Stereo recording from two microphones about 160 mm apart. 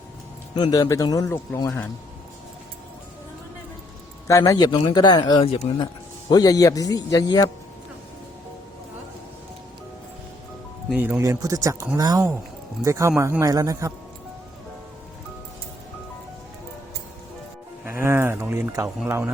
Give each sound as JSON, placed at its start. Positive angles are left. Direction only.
{"t": 0.5, "sound": "a man's voice", "side_deg": 25}
{"t": 4.3, "sound": "a man's voice", "side_deg": 20}
{"t": 5.5, "sound": "speech", "side_deg": 40}
{"t": 6.2, "sound": "a man's voice", "side_deg": 25}
{"t": 10.8, "sound": "speech", "side_deg": -10}
{"t": 11.2, "sound": "a man's voice", "side_deg": -20}
{"t": 17.8, "sound": "a sound", "side_deg": -15}
{"t": 19.0, "sound": "speech", "side_deg": -15}